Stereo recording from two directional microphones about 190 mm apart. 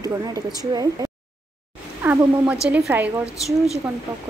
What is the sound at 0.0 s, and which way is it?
Speech, 20° right (ahead or behind).